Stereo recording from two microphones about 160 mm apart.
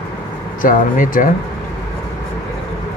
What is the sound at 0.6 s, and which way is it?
Speech, 55° left (ahead or behind).